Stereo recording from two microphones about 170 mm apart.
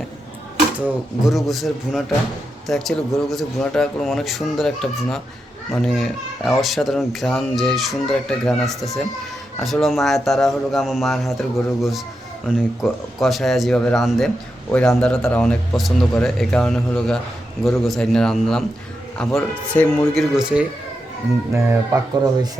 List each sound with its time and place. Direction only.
0.8 s a man's voice: centre (ahead or behind)
20.3 s speech: 5° right (ahead or behind)
21.5 s speech: 20° right (ahead or behind)